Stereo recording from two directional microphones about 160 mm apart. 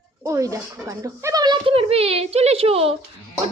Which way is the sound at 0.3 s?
20° right (ahead or behind).